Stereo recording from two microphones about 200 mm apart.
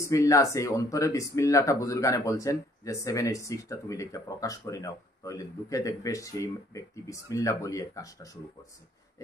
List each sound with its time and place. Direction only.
0.0 s speech: 15° left (ahead or behind)